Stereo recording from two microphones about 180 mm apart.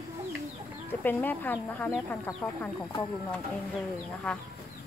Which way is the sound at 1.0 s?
10° left (ahead or behind).